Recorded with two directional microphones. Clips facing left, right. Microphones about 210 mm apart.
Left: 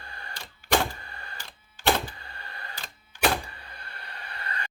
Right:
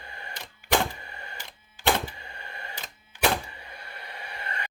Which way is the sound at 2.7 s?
20° right (ahead or behind).